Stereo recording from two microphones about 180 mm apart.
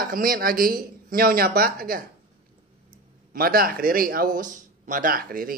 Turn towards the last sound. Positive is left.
turn(degrees=-55)  # may be behind; listen again after turning